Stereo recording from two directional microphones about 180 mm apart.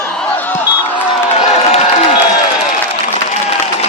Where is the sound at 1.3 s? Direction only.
35° left (ahead or behind).